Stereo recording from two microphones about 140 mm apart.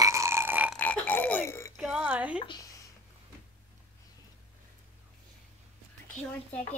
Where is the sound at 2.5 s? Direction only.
25° left (ahead or behind).